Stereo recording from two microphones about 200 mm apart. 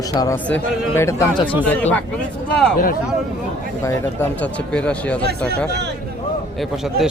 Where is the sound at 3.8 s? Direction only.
10° left (ahead or behind).